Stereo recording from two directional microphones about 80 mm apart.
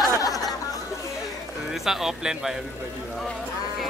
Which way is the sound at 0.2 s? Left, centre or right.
Left.